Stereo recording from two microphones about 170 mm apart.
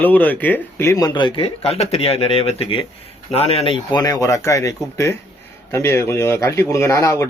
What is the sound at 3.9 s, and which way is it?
Speech, 20° left (ahead or behind).